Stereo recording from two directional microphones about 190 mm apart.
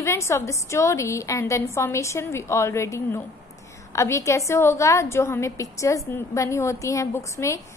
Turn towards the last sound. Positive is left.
turn(degrees=15)  # may be behind; listen again after turning